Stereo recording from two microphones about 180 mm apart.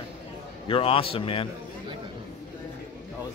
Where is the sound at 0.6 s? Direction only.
30° left (ahead or behind).